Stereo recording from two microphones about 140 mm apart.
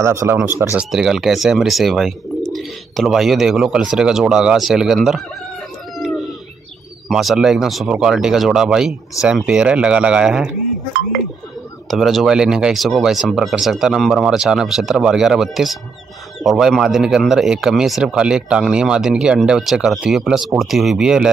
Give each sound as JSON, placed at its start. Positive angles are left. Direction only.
{"t": 0.0, "sound": "speech", "side_deg": -20}
{"t": 0.7, "sound": "a man's voice", "side_deg": -5}
{"t": 7.1, "sound": "a man's voice", "side_deg": 0}
{"t": 9.2, "sound": "speech", "side_deg": 25}
{"t": 9.5, "sound": "speech", "side_deg": -10}
{"t": 11.9, "sound": "a man's voice", "side_deg": 0}